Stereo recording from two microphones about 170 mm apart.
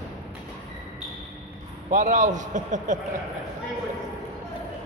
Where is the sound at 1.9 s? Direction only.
50° right (ahead or behind).